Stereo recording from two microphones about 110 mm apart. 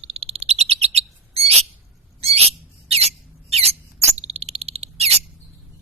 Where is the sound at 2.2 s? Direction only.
65° right (ahead or behind).